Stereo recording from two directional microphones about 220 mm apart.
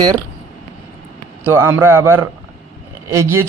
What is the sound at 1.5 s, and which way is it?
A man's voice, 10° right (ahead or behind).